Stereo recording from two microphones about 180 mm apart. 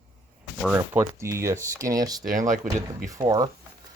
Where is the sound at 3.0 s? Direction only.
20° right (ahead or behind).